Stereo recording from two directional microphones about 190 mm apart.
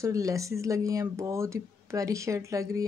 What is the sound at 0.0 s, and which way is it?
Speech, 15° right (ahead or behind).